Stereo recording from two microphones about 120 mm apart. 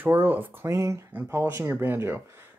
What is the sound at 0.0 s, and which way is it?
Speech, 15° right (ahead or behind).